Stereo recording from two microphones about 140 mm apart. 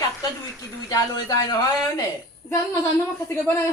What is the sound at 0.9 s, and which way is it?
Speech, 30° left (ahead or behind).